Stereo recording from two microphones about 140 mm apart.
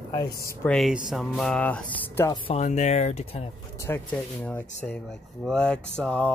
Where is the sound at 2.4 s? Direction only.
50° left (ahead or behind).